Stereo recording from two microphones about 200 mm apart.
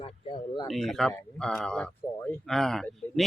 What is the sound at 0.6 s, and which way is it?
Speech, centre (ahead or behind).